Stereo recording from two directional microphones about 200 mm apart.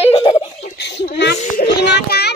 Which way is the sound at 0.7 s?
60° left (ahead or behind).